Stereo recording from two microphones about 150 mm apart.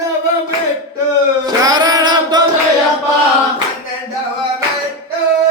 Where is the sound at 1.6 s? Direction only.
25° right (ahead or behind).